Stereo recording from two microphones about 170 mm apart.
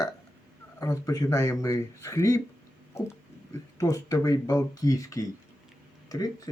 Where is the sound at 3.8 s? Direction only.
20° left (ahead or behind).